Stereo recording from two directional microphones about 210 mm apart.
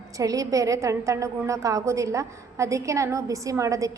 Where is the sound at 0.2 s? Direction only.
15° right (ahead or behind).